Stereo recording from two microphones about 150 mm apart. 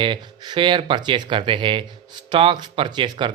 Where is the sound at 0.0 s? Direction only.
30° right (ahead or behind).